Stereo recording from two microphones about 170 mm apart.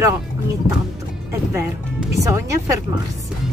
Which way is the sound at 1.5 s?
15° right (ahead or behind).